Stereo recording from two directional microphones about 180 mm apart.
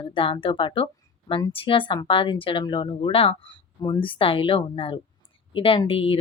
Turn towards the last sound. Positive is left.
turn(degrees=30)  # may be behind; listen again after turning